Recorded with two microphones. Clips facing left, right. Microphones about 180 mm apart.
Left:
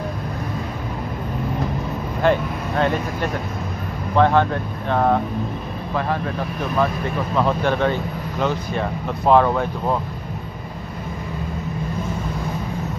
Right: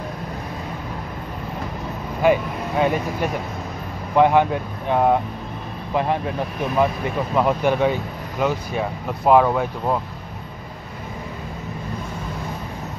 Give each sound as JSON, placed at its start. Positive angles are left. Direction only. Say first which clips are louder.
{"t": 2.2, "sound": "speech", "louder": "right 1 dB", "side_deg": -10}
{"t": 7.3, "sound": "speech", "louder": "right 1 dB", "side_deg": -10}